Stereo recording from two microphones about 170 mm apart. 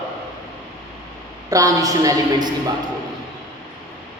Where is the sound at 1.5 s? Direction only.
20° right (ahead or behind).